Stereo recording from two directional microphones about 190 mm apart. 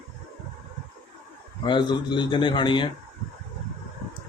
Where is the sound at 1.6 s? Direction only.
25° left (ahead or behind).